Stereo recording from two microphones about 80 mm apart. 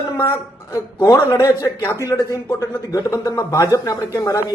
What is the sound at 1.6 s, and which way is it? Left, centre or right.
A man's voice, left.